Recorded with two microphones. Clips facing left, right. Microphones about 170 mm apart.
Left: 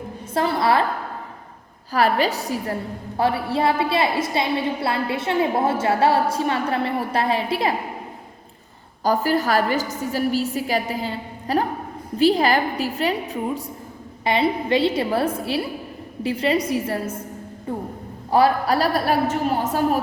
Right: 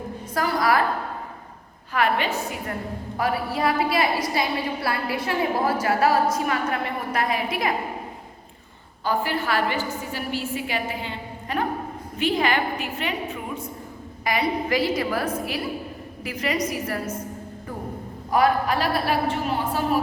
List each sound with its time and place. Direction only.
0.3 s a woman's voice: 25° left (ahead or behind)
1.9 s a woman's voice: 35° left (ahead or behind)
9.0 s a woman's voice: 40° left (ahead or behind)